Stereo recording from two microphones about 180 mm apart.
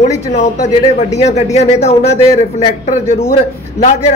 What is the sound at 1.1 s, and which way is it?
A man's voice, 40° left (ahead or behind).